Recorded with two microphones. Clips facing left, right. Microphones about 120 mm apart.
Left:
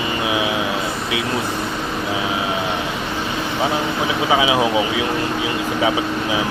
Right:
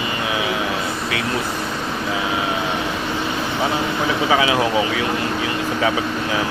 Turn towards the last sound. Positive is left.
turn(degrees=15)  # may be behind; listen again after turning